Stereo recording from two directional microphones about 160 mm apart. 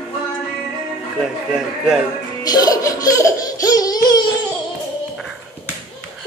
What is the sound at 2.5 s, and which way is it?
Laughter, 25° left (ahead or behind).